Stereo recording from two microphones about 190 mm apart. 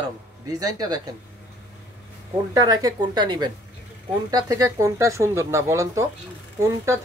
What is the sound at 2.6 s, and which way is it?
Speech, 20° right (ahead or behind).